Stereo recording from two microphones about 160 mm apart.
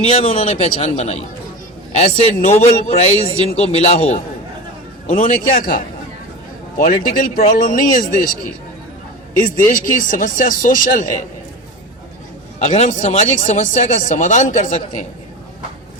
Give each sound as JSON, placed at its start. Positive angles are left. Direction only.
{"t": 0.1, "sound": "a man's voice", "side_deg": 35}
{"t": 5.0, "sound": "speech", "side_deg": 55}
{"t": 9.4, "sound": "speech", "side_deg": 55}
{"t": 12.5, "sound": "speech", "side_deg": 45}